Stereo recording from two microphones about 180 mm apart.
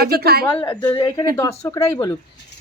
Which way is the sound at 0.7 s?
10° left (ahead or behind).